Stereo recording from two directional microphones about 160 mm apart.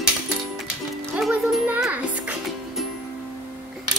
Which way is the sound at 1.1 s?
5° right (ahead or behind).